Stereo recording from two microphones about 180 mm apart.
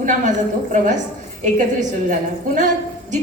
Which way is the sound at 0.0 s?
45° right (ahead or behind).